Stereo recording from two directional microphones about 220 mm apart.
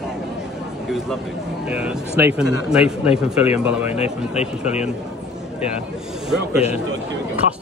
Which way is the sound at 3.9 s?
30° left (ahead or behind).